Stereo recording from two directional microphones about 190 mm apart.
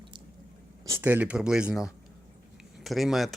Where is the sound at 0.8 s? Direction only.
15° right (ahead or behind).